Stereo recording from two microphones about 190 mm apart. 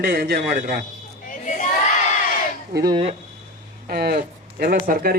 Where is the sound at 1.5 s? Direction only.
40° left (ahead or behind).